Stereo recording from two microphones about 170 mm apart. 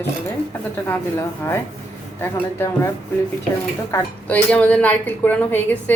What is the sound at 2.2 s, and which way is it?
Speech, 15° left (ahead or behind).